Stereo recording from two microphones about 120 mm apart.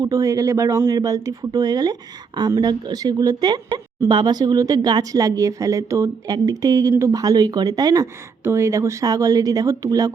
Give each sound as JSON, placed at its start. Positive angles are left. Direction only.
{"t": 0.0, "sound": "a woman's voice", "side_deg": -30}